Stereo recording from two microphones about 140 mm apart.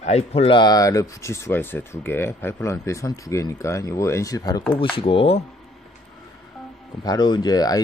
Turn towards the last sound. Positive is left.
turn(degrees=25)  # may be behind; listen again after turning